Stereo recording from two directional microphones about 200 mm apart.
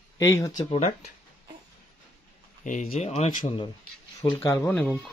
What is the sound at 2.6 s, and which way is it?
Speech, 40° left (ahead or behind).